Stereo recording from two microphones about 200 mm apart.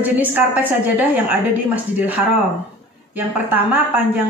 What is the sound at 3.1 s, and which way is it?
Speech, 10° right (ahead or behind).